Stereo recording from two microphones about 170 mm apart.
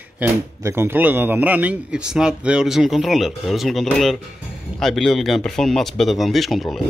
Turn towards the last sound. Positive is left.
turn(degrees=0)  # may be behind; listen again after turning